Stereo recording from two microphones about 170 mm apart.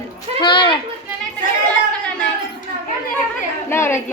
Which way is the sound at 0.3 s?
25° left (ahead or behind).